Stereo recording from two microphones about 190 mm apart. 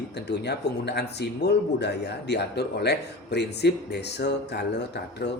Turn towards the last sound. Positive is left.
turn(degrees=60)  # may be behind; listen again after turning